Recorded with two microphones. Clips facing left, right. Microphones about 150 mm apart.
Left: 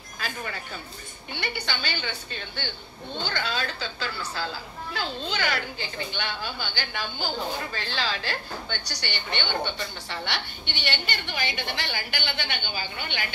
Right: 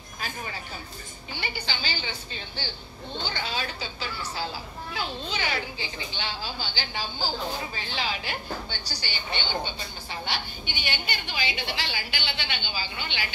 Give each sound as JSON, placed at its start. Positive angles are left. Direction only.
{"t": 1.3, "sound": "a woman's voice", "side_deg": 60}
{"t": 5.3, "sound": "a woman's voice", "side_deg": 65}
{"t": 8.1, "sound": "a woman's voice", "side_deg": -15}
{"t": 8.6, "sound": "a woman's voice", "side_deg": 65}